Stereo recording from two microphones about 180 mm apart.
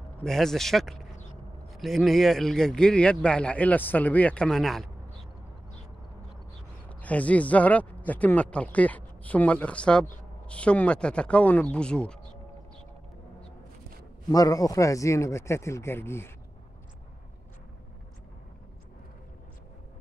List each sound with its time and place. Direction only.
0.2 s a man's voice: centre (ahead or behind)
7.0 s a man's voice: 10° left (ahead or behind)
14.3 s speech: 20° left (ahead or behind)